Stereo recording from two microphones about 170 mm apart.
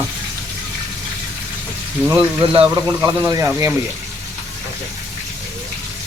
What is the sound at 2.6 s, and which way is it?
Speech, 10° right (ahead or behind).